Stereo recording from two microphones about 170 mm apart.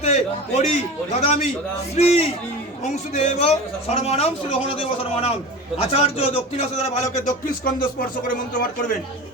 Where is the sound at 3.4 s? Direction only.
35° left (ahead or behind).